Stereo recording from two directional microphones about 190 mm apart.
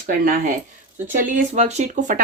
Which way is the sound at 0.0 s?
45° right (ahead or behind).